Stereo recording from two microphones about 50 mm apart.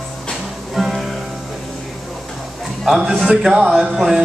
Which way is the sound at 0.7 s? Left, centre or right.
Centre.